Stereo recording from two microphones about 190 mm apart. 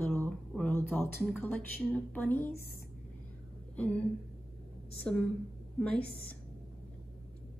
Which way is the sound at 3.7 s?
5° left (ahead or behind).